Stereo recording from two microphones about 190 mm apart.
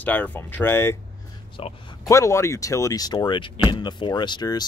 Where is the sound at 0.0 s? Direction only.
10° left (ahead or behind).